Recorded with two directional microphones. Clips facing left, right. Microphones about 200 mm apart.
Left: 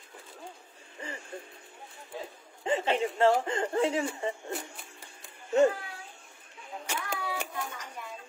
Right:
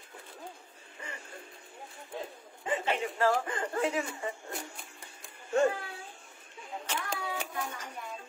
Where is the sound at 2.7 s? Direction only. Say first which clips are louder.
Left 4 dB; 30° left (ahead or behind).